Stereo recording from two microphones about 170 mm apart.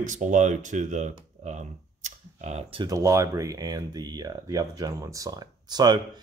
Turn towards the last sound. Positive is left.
turn(degrees=-25)  # may be behind; listen again after turning